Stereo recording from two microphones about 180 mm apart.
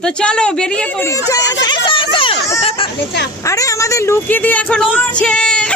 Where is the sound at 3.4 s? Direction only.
15° left (ahead or behind).